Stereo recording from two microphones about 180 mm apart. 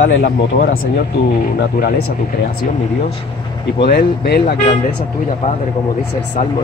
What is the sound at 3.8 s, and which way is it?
Speech, 60° left (ahead or behind).